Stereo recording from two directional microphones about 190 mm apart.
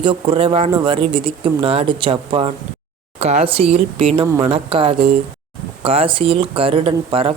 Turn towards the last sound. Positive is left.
turn(degrees=-30)  # may be behind; listen again after turning